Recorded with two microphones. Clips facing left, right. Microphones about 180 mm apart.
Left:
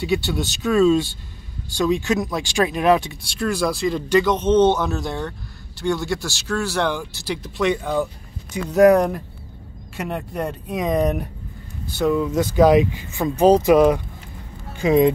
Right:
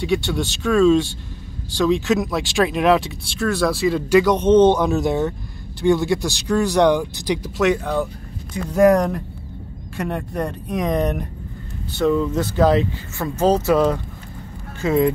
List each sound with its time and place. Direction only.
0.0 s speech: centre (ahead or behind)
6.1 s speech: 15° right (ahead or behind); by 15.1 s 15° left (ahead or behind)